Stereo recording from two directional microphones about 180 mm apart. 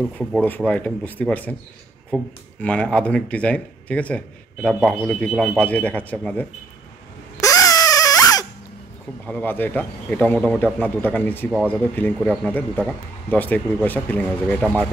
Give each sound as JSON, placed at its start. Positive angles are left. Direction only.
{"t": 0.0, "sound": "speech", "side_deg": 0}
{"t": 7.3, "sound": "baby cry", "side_deg": 20}
{"t": 9.2, "sound": "speech", "side_deg": 10}